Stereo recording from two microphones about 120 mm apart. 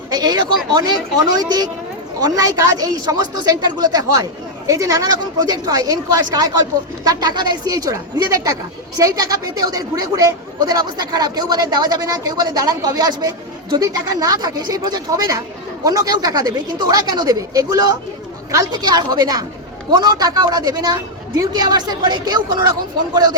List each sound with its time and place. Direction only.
0.1 s speech: 35° right (ahead or behind)